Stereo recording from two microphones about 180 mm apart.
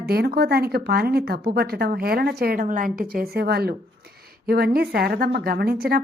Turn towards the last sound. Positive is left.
turn(degrees=-60)  # may be behind; listen again after turning